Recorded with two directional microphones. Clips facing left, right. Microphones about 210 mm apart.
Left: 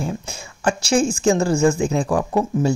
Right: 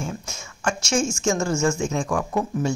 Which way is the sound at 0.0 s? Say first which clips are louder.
Left 5 dB; 35° left (ahead or behind).